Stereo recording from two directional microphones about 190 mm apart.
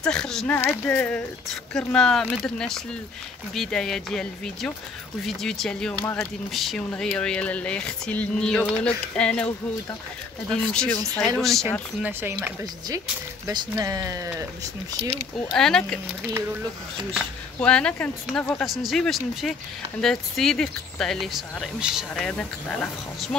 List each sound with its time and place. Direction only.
0.0 s speech: 5° left (ahead or behind)
10.5 s speech: 5° left (ahead or behind)
12.0 s speech: 10° right (ahead or behind)
15.5 s speech: 5° left (ahead or behind)
17.1 s speech: 5° left (ahead or behind)